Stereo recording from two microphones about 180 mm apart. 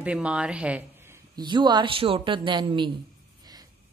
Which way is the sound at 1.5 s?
25° right (ahead or behind).